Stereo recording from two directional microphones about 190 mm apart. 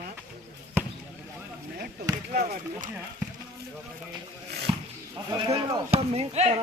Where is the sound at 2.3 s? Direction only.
50° right (ahead or behind).